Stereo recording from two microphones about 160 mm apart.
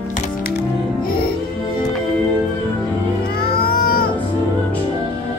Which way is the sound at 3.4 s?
70° left (ahead or behind).